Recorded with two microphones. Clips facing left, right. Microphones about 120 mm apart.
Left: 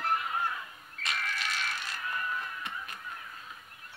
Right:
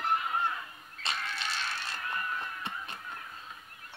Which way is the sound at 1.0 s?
30° right (ahead or behind).